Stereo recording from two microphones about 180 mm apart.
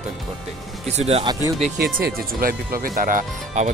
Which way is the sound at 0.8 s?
35° right (ahead or behind).